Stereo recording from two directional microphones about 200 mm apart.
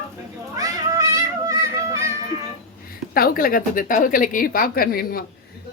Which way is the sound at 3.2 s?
45° left (ahead or behind).